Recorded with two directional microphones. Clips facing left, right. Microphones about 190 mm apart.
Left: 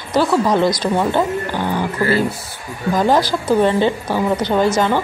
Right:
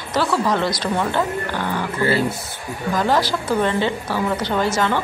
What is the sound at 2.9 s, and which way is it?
A woman's voice, 15° left (ahead or behind).